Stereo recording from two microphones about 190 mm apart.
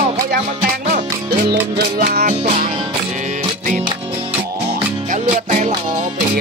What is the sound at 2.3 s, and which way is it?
Music, 35° right (ahead or behind).